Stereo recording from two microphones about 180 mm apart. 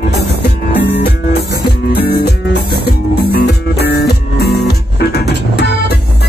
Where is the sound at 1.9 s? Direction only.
65° left (ahead or behind).